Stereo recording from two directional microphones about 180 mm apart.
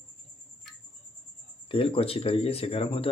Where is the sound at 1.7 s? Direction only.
30° left (ahead or behind).